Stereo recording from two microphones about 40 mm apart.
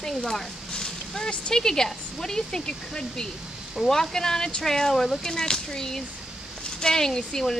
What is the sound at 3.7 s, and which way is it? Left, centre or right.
Speech, centre.